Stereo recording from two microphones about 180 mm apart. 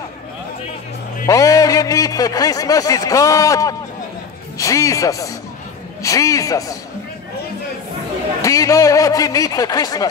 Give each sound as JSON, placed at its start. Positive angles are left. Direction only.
{"t": 1.2, "sound": "a man's voice", "side_deg": 20}
{"t": 8.4, "sound": "a man's voice", "side_deg": 20}